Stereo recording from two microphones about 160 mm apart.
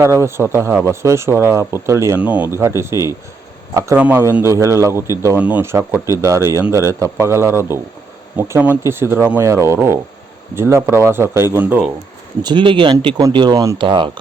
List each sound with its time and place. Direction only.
0.0 s speech: 15° right (ahead or behind)
12.4 s speech: 30° right (ahead or behind)